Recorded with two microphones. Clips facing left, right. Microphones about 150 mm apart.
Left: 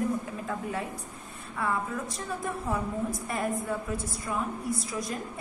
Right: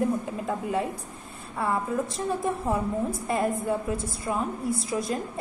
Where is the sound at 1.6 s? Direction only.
30° right (ahead or behind).